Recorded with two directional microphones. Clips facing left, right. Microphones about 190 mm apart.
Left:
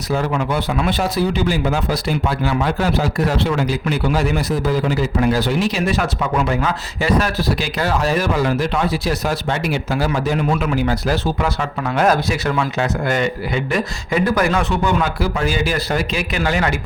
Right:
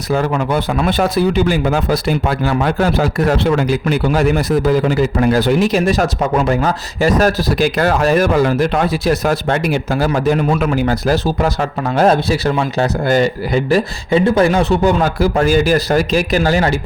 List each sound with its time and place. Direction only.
0.1 s speech: 50° right (ahead or behind); by 16.8 s 30° right (ahead or behind)